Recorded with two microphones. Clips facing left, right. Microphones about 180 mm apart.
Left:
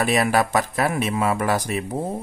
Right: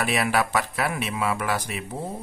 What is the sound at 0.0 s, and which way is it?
Speech, 40° left (ahead or behind).